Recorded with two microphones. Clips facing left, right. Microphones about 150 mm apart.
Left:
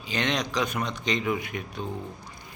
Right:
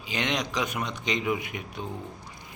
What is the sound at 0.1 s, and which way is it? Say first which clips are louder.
Speech: left 2 dB; 15° right (ahead or behind).